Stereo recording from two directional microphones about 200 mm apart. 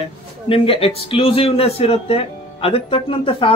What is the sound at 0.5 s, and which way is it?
A man's voice, 30° left (ahead or behind).